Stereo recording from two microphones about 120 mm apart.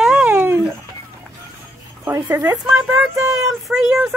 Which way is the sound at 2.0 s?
15° right (ahead or behind).